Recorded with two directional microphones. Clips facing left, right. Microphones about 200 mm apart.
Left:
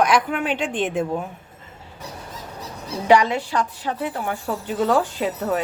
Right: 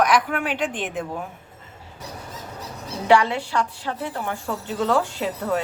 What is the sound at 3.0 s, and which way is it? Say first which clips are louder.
A woman's voice: left 1 dB; 15° left (ahead or behind).